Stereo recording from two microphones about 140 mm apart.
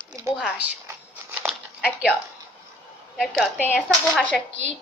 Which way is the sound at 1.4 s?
5° right (ahead or behind).